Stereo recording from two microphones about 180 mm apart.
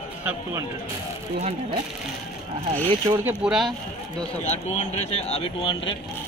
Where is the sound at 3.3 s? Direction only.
5° right (ahead or behind).